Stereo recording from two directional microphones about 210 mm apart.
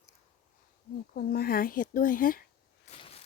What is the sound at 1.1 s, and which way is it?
Speech, 45° left (ahead or behind).